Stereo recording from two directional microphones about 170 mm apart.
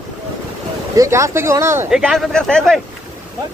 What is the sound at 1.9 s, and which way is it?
Speech, centre (ahead or behind).